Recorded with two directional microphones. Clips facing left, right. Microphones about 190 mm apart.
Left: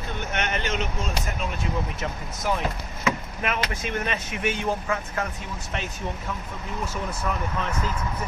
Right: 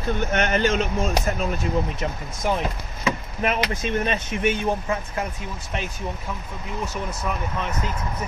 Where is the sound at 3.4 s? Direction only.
25° right (ahead or behind).